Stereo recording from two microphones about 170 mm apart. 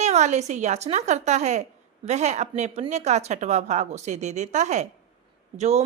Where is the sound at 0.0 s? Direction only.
45° right (ahead or behind).